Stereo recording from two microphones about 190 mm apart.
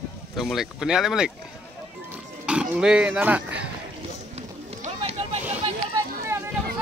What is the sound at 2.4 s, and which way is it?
Speech, 5° right (ahead or behind).